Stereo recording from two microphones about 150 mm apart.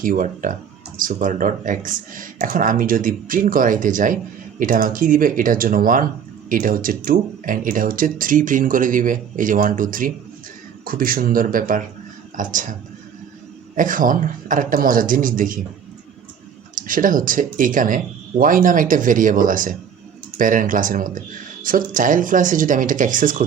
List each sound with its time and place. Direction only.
0.0 s speech: 65° right (ahead or behind)
13.7 s speech: 60° right (ahead or behind)
16.7 s speech: 65° right (ahead or behind)